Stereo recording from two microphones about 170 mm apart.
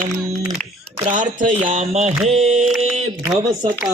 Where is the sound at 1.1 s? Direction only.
50° right (ahead or behind).